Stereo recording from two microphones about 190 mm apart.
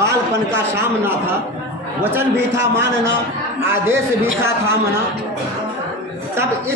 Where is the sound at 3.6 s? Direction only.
10° right (ahead or behind).